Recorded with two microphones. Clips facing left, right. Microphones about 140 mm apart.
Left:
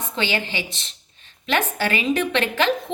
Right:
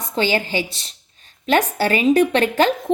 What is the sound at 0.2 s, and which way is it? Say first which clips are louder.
A woman's voice: right 6 dB; 40° right (ahead or behind).